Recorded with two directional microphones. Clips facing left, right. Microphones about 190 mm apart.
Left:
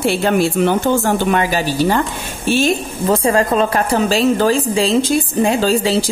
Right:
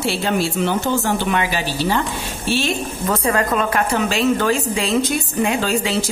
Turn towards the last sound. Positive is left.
turn(degrees=35)  # may be behind; listen again after turning